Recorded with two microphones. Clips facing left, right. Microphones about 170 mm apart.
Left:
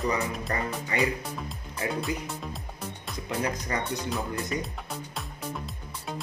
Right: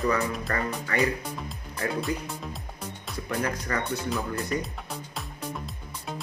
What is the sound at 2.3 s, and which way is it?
Music, centre (ahead or behind).